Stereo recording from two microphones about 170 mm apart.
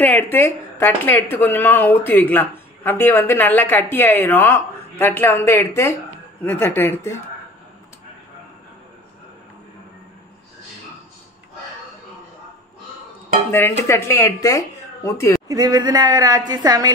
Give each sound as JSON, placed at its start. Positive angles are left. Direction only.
{"t": 0.0, "sound": "a woman's voice", "side_deg": 10}
{"t": 13.5, "sound": "a woman's voice", "side_deg": 15}
{"t": 15.4, "sound": "a woman's voice", "side_deg": -20}